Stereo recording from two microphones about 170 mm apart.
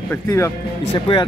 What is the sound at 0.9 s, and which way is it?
Speech, 30° left (ahead or behind).